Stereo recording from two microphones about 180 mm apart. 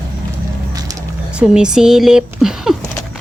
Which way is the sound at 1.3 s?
5° right (ahead or behind).